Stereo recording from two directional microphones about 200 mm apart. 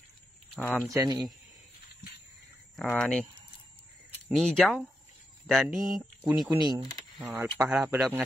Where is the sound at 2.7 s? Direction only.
5° left (ahead or behind).